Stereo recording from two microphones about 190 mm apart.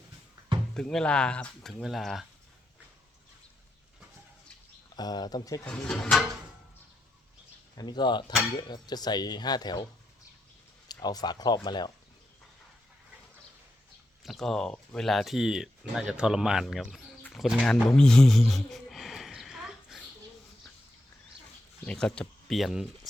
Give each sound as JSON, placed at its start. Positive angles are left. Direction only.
{"t": 0.7, "sound": "speech", "side_deg": 5}
{"t": 4.9, "sound": "speech", "side_deg": 20}
{"t": 5.6, "sound": "speech", "side_deg": 5}
{"t": 7.8, "sound": "speech", "side_deg": 25}
{"t": 10.8, "sound": "speech", "side_deg": 20}
{"t": 14.3, "sound": "speech", "side_deg": 0}
{"t": 21.8, "sound": "speech", "side_deg": 5}